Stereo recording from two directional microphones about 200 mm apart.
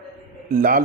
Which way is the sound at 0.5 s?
45° right (ahead or behind).